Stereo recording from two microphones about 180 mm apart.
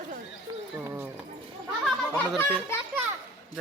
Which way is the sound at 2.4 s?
10° left (ahead or behind).